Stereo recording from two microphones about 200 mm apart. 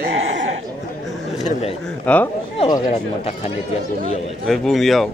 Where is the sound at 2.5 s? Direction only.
25° left (ahead or behind).